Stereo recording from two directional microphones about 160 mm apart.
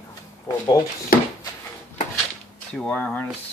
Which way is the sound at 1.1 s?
60° left (ahead or behind).